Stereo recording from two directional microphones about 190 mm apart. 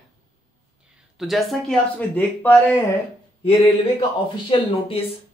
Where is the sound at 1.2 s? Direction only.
Centre (ahead or behind).